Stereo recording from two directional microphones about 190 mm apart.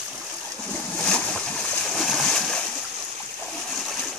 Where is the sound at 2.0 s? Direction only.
Centre (ahead or behind).